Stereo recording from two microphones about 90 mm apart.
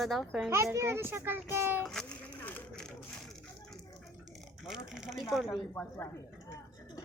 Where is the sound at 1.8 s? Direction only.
5° left (ahead or behind).